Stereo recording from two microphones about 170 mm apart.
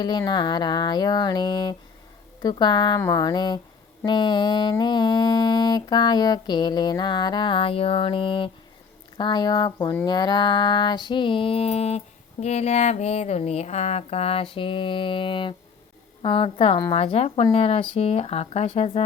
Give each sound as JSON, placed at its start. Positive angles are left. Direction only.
{"t": 0.0, "sound": "mantra", "side_deg": 25}